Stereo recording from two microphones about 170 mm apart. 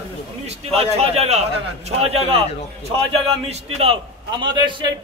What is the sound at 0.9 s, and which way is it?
A man's voice, 40° right (ahead or behind).